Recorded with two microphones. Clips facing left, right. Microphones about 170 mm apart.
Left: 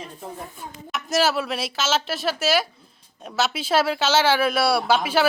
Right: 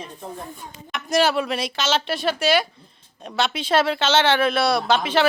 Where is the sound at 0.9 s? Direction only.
Centre (ahead or behind).